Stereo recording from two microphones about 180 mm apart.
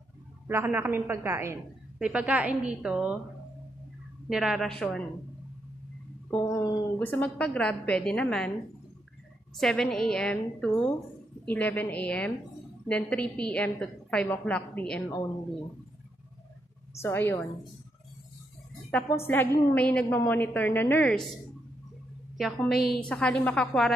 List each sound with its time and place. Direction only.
0.5 s a woman's voice: 15° right (ahead or behind)
4.3 s a woman's voice: centre (ahead or behind)
6.3 s a woman's voice: 15° left (ahead or behind)
9.6 s a woman's voice: centre (ahead or behind)
17.0 s a woman's voice: 15° left (ahead or behind)
18.9 s a woman's voice: 10° left (ahead or behind)
22.4 s a woman's voice: centre (ahead or behind)